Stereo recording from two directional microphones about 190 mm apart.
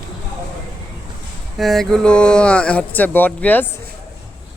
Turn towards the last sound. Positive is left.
turn(degrees=10)  # may be behind; listen again after turning